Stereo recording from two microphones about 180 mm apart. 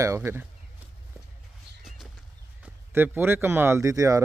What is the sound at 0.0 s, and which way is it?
Speech, 15° right (ahead or behind).